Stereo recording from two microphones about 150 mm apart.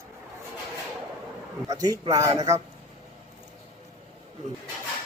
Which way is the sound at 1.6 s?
25° right (ahead or behind).